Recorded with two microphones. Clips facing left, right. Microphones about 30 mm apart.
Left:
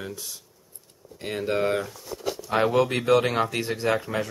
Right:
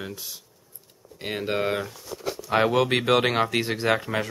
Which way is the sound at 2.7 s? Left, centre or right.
Right.